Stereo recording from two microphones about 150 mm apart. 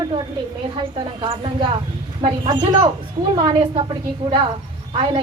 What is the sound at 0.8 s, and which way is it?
A woman's voice, 35° right (ahead or behind).